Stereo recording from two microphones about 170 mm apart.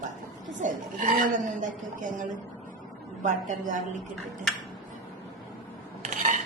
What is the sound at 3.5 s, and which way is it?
Speech, 50° right (ahead or behind).